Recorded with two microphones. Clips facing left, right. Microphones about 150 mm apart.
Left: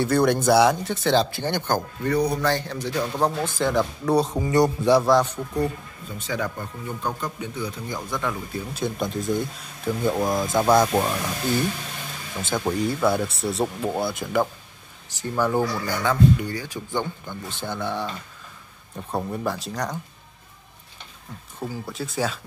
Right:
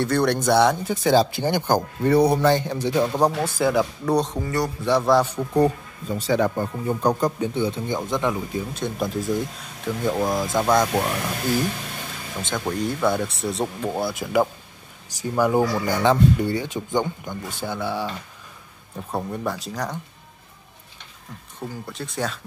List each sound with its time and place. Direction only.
0.0 s speech: 5° left (ahead or behind)
0.8 s speech: 10° right (ahead or behind)
2.0 s a man's voice: 30° right (ahead or behind)
3.3 s speech: 10° right (ahead or behind)
4.1 s speech: 5° left (ahead or behind)
4.5 s a man's voice: 20° left (ahead or behind)
4.9 s speech: centre (ahead or behind)
5.5 s speech: 35° right (ahead or behind); by 8.4 s 20° right (ahead or behind)
8.7 s speech: centre (ahead or behind)
12.4 s speech: 5° left (ahead or behind); by 15.6 s 10° right (ahead or behind)
15.7 s speech: 25° right (ahead or behind); by 20.0 s centre (ahead or behind)
21.5 s speech: 5° left (ahead or behind)